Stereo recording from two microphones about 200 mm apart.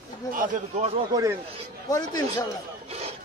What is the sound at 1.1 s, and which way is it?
Speech, 15° right (ahead or behind).